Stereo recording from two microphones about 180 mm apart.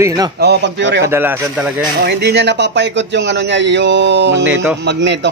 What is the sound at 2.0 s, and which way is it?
A man's voice, 65° right (ahead or behind).